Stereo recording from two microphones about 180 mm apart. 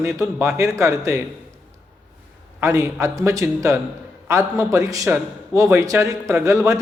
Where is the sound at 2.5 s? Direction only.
15° right (ahead or behind).